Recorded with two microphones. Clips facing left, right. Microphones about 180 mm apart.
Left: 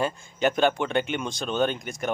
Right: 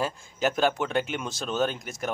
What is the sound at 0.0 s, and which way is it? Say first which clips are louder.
Speech: left 2 dB; centre (ahead or behind).